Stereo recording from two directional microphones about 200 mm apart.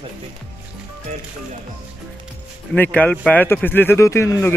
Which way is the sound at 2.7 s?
5° left (ahead or behind).